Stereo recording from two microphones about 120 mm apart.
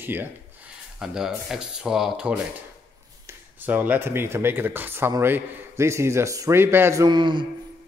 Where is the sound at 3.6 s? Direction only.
15° right (ahead or behind).